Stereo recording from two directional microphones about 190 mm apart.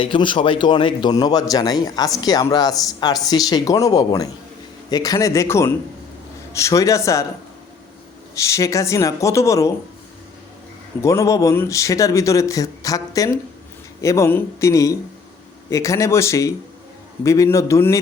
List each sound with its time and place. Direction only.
0.0 s speech: 25° left (ahead or behind)
8.4 s speech: 15° left (ahead or behind)
11.0 s speech: 15° left (ahead or behind)